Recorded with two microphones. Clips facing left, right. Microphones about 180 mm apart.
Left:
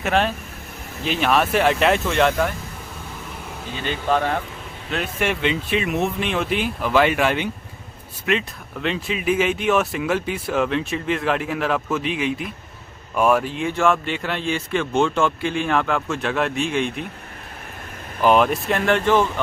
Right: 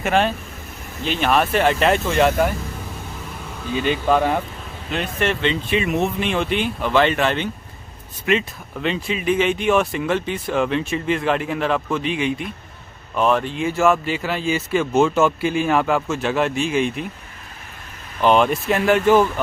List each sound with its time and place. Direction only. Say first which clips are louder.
0.0 s speech: right 2 dB; centre (ahead or behind)
3.8 s speech: right 3 dB; 15° right (ahead or behind)
4.9 s speech: right 1 dB; 5° left (ahead or behind)
18.2 s speech: even; 5° left (ahead or behind)